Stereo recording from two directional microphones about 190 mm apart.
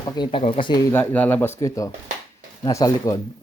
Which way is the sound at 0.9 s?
10° left (ahead or behind).